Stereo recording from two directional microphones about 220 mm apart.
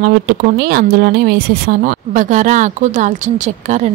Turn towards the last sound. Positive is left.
turn(degrees=-35)  # may be behind; listen again after turning